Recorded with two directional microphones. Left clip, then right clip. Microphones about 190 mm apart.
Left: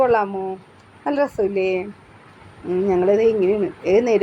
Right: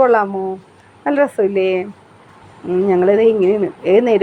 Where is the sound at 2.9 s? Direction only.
15° right (ahead or behind).